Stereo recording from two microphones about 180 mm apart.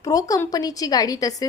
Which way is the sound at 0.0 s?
20° left (ahead or behind).